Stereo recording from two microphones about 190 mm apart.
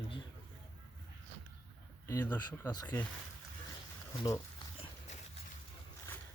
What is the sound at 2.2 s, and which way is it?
Speech, 10° left (ahead or behind).